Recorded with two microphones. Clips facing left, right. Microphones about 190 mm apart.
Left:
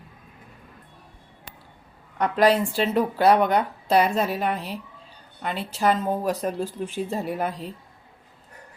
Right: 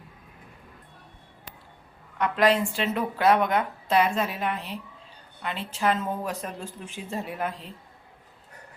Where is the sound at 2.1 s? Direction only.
35° left (ahead or behind).